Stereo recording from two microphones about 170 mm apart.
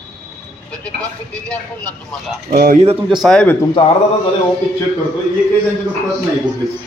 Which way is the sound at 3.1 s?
Centre (ahead or behind).